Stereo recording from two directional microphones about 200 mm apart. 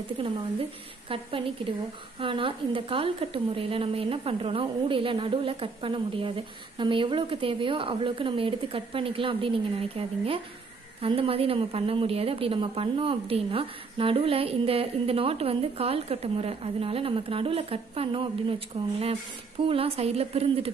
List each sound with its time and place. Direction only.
0.2 s a woman's voice: 25° right (ahead or behind)